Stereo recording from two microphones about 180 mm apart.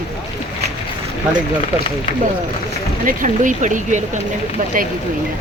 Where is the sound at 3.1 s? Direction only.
45° right (ahead or behind).